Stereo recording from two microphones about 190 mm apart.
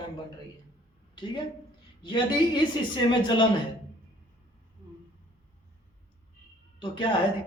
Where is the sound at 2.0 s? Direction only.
25° left (ahead or behind).